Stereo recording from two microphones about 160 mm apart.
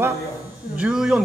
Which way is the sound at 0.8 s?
5° right (ahead or behind).